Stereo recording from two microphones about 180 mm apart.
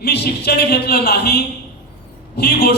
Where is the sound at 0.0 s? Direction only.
60° left (ahead or behind).